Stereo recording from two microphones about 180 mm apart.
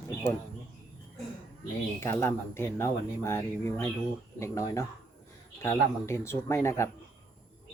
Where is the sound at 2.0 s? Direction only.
15° left (ahead or behind).